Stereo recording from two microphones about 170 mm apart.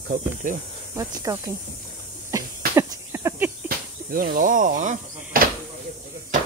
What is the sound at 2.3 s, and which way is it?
Cough, 20° right (ahead or behind).